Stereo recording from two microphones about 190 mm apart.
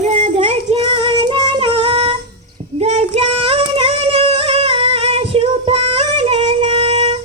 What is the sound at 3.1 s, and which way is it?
Singing, 30° right (ahead or behind).